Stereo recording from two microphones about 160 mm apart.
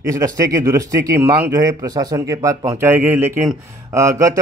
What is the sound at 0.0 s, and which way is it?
Speech, 20° right (ahead or behind).